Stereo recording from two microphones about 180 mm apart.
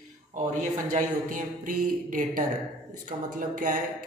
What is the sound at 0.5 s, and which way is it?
Speech, 45° right (ahead or behind).